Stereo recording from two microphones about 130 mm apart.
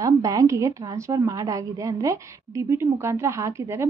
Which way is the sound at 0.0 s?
25° right (ahead or behind).